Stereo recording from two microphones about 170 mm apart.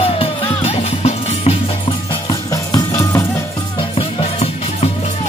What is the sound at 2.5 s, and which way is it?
Music, 20° left (ahead or behind).